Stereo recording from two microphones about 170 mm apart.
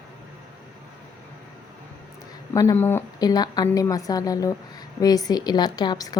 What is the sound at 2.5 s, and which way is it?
A woman's voice, 20° left (ahead or behind).